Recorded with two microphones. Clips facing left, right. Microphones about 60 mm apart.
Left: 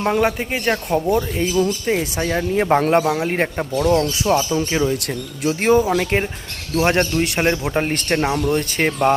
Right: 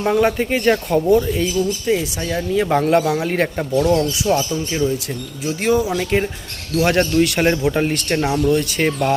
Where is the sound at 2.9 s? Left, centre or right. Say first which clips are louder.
Right 1 dB; left.